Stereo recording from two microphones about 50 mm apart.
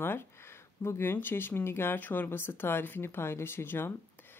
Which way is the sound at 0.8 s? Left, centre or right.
Left.